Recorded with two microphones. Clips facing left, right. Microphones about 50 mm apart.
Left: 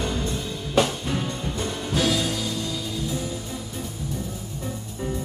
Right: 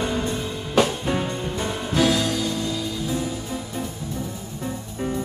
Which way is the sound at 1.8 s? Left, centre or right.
Centre.